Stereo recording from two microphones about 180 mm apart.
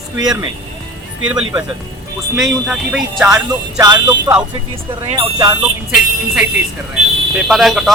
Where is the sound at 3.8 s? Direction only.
20° right (ahead or behind).